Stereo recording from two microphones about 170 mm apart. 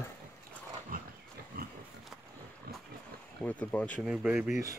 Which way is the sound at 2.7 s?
60° right (ahead or behind).